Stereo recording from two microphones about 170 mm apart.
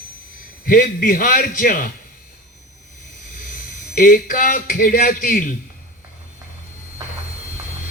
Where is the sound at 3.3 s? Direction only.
55° left (ahead or behind).